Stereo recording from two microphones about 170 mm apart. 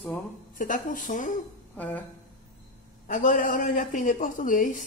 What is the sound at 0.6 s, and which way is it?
Speech, 50° left (ahead or behind).